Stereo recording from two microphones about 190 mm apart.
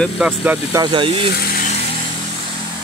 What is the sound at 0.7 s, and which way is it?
Speech, 25° right (ahead or behind).